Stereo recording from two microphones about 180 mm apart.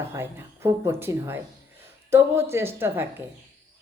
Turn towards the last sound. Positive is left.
turn(degrees=-10)  # may be behind; listen again after turning